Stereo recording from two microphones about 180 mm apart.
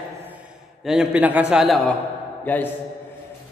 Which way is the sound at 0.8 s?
5° right (ahead or behind).